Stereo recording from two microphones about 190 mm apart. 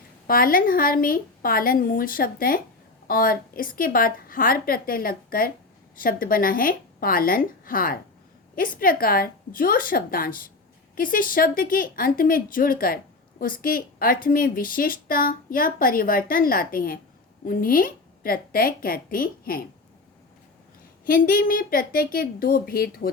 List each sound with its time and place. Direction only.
0.3 s a woman's voice: 50° left (ahead or behind)
21.0 s a woman's voice: 50° left (ahead or behind)